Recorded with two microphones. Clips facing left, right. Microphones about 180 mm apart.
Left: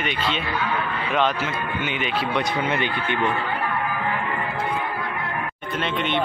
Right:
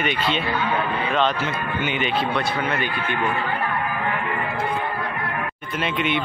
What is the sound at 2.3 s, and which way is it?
A man's voice, 20° left (ahead or behind).